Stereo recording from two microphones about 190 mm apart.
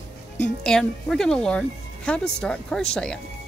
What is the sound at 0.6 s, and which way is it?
Speech, 5° left (ahead or behind).